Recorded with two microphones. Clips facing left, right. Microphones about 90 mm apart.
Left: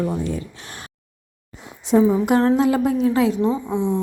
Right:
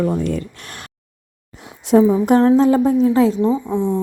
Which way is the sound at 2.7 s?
25° right (ahead or behind).